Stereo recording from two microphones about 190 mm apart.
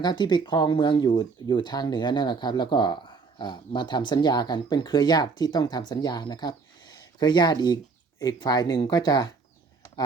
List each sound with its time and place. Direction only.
0.0 s speech: 25° left (ahead or behind)